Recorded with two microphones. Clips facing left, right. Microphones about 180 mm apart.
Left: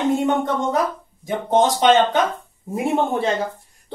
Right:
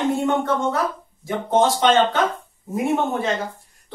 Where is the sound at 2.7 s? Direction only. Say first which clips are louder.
Left 1 dB; 30° left (ahead or behind).